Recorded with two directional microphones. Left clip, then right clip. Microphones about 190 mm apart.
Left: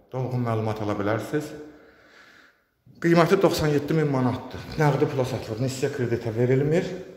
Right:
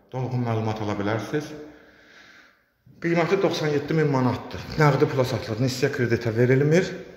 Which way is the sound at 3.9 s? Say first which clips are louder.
Right 2 dB; 10° right (ahead or behind).